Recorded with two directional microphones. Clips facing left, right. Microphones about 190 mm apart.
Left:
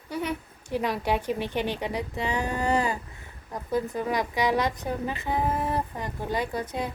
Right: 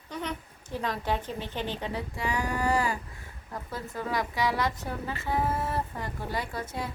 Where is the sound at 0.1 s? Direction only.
10° left (ahead or behind).